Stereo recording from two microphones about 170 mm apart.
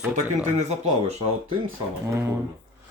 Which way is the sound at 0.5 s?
40° right (ahead or behind).